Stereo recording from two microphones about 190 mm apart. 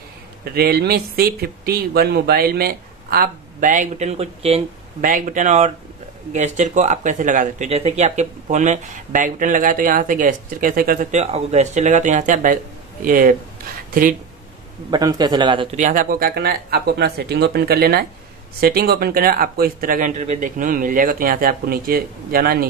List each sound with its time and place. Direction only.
0.6 s speech: 55° right (ahead or behind); by 4.6 s 30° right (ahead or behind)
5.0 s speech: 45° right (ahead or behind)
14.9 s a man's voice: 20° right (ahead or behind)
15.7 s speech: 45° right (ahead or behind)